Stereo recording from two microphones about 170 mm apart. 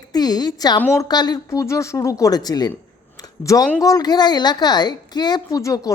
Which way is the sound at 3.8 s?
20° left (ahead or behind).